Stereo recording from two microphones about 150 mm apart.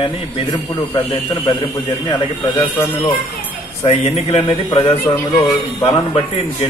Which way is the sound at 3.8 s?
40° left (ahead or behind).